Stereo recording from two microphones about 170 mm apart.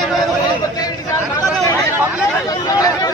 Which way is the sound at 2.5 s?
20° left (ahead or behind).